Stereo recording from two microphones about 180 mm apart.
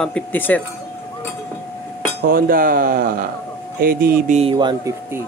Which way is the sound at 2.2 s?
55° right (ahead or behind).